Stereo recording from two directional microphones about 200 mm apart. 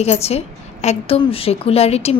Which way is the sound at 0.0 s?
30° left (ahead or behind).